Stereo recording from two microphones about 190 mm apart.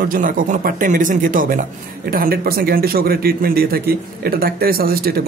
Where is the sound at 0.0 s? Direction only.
45° right (ahead or behind).